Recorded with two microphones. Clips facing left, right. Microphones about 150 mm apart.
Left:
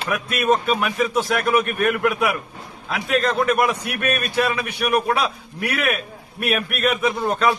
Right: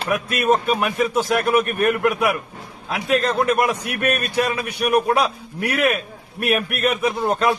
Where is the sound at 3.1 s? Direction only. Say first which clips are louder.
Right 1 dB; 40° right (ahead or behind).